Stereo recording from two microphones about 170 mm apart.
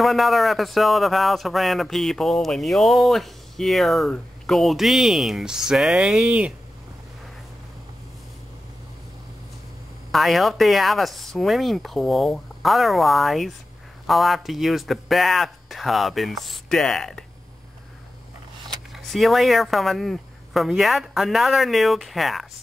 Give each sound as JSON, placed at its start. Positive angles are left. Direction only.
{"t": 0.0, "sound": "speech", "side_deg": 0}
{"t": 10.1, "sound": "speech", "side_deg": 0}
{"t": 18.7, "sound": "speech", "side_deg": 0}